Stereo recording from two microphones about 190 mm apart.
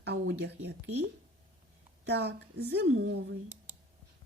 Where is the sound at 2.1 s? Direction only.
60° right (ahead or behind); by 3.2 s 80° right.